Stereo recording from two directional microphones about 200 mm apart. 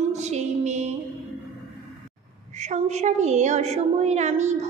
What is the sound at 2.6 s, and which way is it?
A woman's voice, 35° right (ahead or behind).